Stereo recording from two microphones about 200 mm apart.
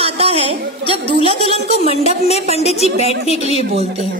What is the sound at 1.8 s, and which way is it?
A woman's voice, 30° left (ahead or behind).